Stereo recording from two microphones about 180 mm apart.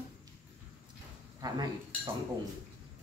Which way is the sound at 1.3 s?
20° right (ahead or behind).